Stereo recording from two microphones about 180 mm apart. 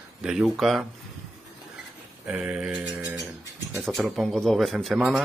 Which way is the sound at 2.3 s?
10° right (ahead or behind).